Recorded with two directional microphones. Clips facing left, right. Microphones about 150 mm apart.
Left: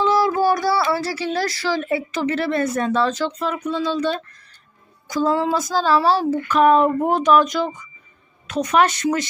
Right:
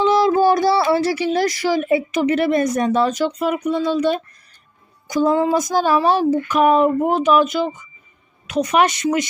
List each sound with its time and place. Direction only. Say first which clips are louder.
0.0 s speech: right 3 dB; 20° right (ahead or behind)